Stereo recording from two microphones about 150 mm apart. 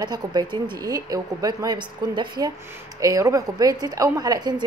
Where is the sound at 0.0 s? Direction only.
25° right (ahead or behind).